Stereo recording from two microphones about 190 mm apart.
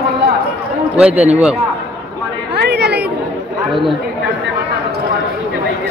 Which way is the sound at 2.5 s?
60° right (ahead or behind).